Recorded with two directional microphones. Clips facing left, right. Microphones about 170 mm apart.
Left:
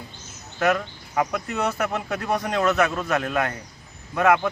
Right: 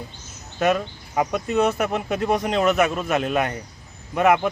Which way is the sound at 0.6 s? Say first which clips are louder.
Right 2 dB; 20° right (ahead or behind).